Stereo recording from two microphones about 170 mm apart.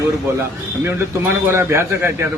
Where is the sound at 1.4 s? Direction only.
15° right (ahead or behind).